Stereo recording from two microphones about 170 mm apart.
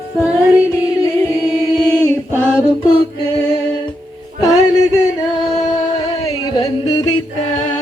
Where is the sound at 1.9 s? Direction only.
15° right (ahead or behind).